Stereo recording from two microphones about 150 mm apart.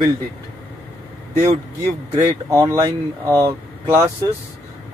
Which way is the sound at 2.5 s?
20° right (ahead or behind).